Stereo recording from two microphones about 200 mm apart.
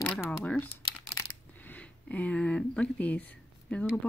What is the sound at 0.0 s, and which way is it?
Shuffling cards, 5° left (ahead or behind).